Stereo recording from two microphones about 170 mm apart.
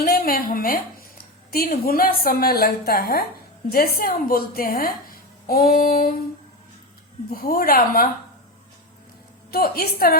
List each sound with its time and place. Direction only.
0.0 s a sound: 60° left (ahead or behind)
1.5 s a woman's voice: 60° left (ahead or behind)
7.3 s a woman's voice: 55° left (ahead or behind)
9.5 s a woman's voice: 65° left (ahead or behind)